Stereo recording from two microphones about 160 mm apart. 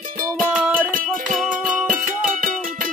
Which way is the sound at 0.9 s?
55° right (ahead or behind).